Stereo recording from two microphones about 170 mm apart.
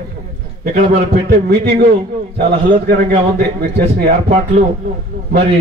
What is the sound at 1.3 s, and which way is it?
Speech, 65° right (ahead or behind).